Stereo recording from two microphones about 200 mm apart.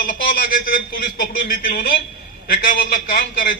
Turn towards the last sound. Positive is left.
turn(degrees=45)  # may be behind; listen again after turning